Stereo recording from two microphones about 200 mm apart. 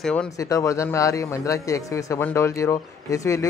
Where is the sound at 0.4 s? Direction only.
15° left (ahead or behind).